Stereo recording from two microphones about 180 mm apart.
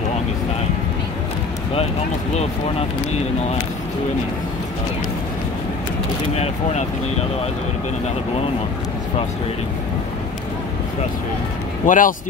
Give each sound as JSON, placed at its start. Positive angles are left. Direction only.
{"t": 6.3, "sound": "speech", "side_deg": 35}
{"t": 11.8, "sound": "speech", "side_deg": 50}